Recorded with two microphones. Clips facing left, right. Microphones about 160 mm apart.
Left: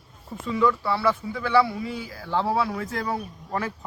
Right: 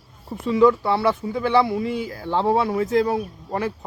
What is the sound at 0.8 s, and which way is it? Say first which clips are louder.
Speech: right 3 dB; 25° right (ahead or behind).